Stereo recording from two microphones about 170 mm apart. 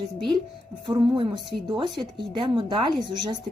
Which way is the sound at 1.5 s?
Centre (ahead or behind).